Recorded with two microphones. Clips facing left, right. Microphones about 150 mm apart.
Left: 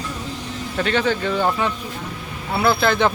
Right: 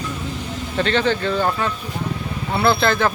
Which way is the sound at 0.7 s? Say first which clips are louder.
Right 1 dB; 5° left (ahead or behind).